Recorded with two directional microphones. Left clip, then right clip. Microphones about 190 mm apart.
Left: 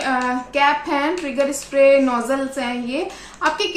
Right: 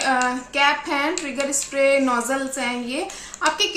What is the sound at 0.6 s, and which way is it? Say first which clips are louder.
A woman's voice: left 2 dB; centre (ahead or behind).